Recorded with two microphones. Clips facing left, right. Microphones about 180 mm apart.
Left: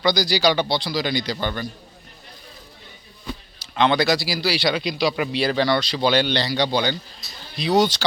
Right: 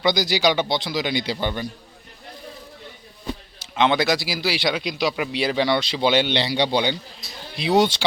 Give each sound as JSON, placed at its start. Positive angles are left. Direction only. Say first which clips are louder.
{"t": 0.3, "sound": "speech", "louder": "even", "side_deg": -20}
{"t": 3.2, "sound": "speech", "louder": "right 3 dB", "side_deg": -20}
{"t": 4.6, "sound": "a man's voice", "louder": "left 2 dB", "side_deg": 0}
{"t": 5.5, "sound": "speech", "louder": "even", "side_deg": -20}